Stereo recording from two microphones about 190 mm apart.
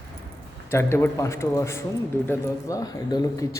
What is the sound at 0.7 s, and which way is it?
Speech, 15° left (ahead or behind).